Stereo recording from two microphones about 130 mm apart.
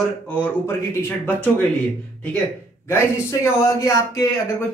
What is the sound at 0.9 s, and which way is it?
Speech, 20° left (ahead or behind).